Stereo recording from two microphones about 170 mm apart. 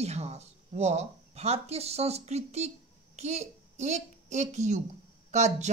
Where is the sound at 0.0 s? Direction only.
40° right (ahead or behind).